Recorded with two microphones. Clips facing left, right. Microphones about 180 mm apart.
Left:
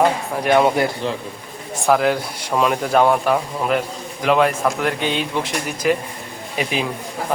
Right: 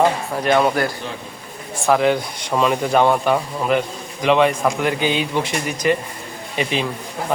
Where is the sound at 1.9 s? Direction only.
Centre (ahead or behind).